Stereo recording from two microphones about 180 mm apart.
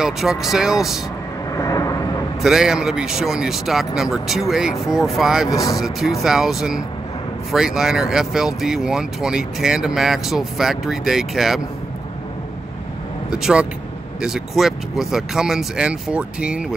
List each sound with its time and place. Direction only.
0.0 s speech: centre (ahead or behind)
1.5 s vehicle: 20° left (ahead or behind)
2.4 s speech: 5° right (ahead or behind)
5.5 s speech: 20° left (ahead or behind)
5.8 s speech: centre (ahead or behind)
13.3 s speech: 5° right (ahead or behind)